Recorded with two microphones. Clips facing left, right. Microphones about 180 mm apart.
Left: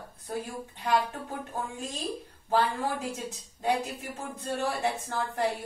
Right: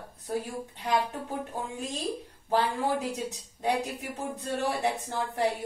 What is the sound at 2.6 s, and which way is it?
Speech, 15° right (ahead or behind).